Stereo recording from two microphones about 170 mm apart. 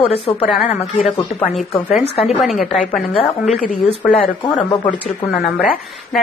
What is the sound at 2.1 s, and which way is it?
A woman's voice, centre (ahead or behind).